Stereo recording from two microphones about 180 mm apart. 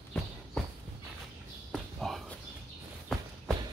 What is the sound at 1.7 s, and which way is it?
Walk, centre (ahead or behind).